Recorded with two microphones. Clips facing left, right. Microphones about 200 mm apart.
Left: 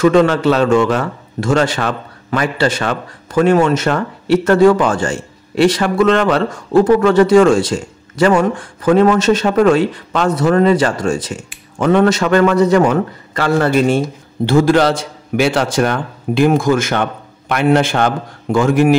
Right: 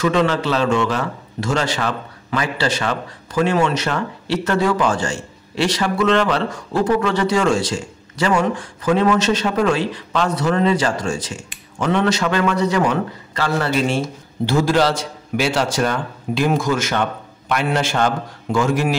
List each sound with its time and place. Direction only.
0.0 s a man's voice: 50° left (ahead or behind)